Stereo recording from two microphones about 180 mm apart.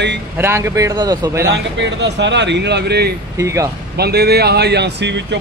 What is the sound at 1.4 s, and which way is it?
A man's voice, 75° right (ahead or behind).